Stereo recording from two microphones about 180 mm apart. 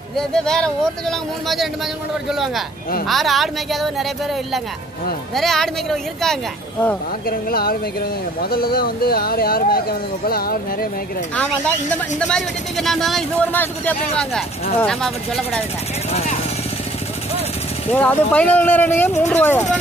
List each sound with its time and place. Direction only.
0.1 s speech: 5° left (ahead or behind)
7.2 s speech: 60° left (ahead or behind)
12.2 s speech: 5° left (ahead or behind)
16.1 s speech: 35° left (ahead or behind)
17.9 s speech: 10° left (ahead or behind)